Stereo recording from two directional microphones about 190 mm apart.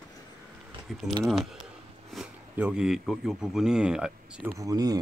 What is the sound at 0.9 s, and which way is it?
Speech, centre (ahead or behind).